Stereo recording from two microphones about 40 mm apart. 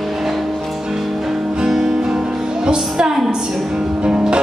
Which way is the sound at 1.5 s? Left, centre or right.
Centre.